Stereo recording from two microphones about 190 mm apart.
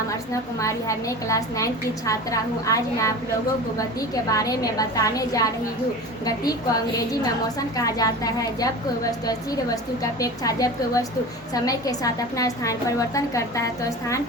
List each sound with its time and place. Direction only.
0.6 s a woman's voice: 15° left (ahead or behind)